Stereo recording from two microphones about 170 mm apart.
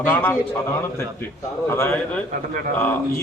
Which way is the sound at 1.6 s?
15° left (ahead or behind).